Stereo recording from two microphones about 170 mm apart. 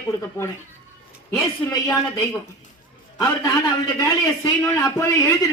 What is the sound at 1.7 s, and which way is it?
Speech, 20° left (ahead or behind).